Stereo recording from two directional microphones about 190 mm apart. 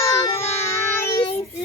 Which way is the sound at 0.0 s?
15° left (ahead or behind).